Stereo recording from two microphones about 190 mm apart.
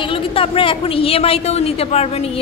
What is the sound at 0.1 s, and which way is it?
A woman's voice, 30° left (ahead or behind).